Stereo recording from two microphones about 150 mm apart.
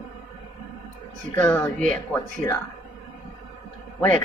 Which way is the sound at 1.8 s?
60° right (ahead or behind).